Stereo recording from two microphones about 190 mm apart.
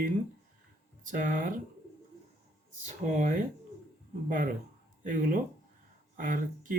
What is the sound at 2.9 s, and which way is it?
Speech, 40° right (ahead or behind).